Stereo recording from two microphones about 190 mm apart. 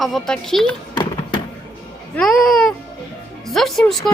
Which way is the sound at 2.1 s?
Centre (ahead or behind).